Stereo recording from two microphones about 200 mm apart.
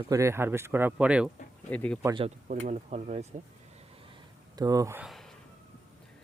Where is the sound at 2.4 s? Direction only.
35° right (ahead or behind).